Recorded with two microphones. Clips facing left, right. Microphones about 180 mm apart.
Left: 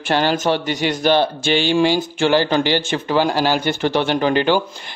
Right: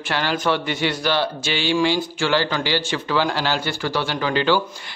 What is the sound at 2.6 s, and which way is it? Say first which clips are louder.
Speech: left 4 dB; 50° left (ahead or behind).